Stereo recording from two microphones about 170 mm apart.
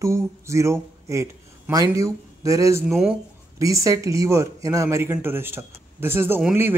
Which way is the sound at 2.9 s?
5° right (ahead or behind).